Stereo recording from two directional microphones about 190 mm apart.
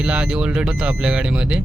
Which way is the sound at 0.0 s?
5° right (ahead or behind).